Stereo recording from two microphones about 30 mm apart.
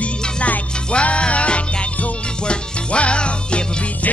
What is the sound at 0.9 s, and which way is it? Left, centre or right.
Music, left.